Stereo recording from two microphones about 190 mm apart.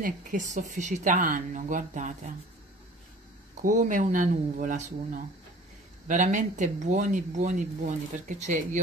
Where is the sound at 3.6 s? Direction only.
40° right (ahead or behind).